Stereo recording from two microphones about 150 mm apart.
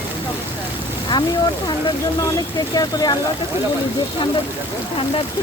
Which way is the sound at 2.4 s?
25° left (ahead or behind).